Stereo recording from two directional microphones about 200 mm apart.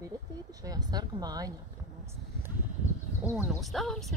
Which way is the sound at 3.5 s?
Centre (ahead or behind).